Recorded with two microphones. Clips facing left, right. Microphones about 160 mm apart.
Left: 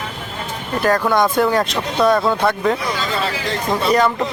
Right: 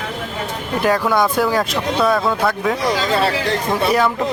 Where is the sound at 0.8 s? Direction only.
5° right (ahead or behind).